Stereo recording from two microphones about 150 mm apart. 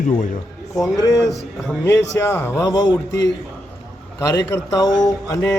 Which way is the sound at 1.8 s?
15° left (ahead or behind).